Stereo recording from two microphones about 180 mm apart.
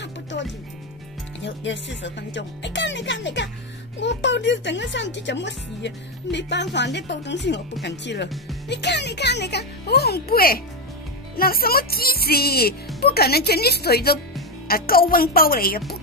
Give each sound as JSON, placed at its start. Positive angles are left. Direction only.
{"t": 0.0, "sound": "music", "side_deg": 80}
{"t": 1.4, "sound": "speech", "side_deg": 85}